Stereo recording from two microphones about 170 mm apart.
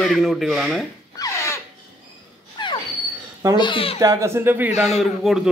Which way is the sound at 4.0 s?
20° right (ahead or behind).